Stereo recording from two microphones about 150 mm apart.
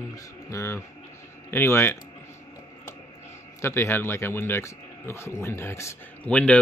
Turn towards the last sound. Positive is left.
turn(degrees=10)  # may be behind; listen again after turning